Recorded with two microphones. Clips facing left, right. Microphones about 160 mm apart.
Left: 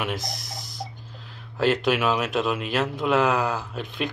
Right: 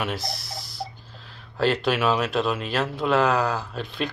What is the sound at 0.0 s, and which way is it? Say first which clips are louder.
Speech: right 1 dB; 20° left (ahead or behind).